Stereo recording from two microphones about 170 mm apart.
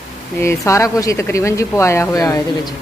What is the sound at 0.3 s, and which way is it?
Speech, 15° left (ahead or behind).